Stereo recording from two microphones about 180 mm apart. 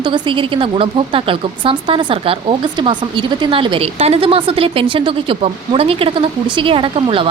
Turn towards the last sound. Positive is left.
turn(degrees=-30)  # may be behind; listen again after turning